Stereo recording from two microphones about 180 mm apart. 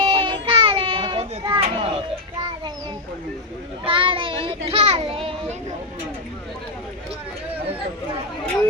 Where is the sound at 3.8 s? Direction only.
30° right (ahead or behind).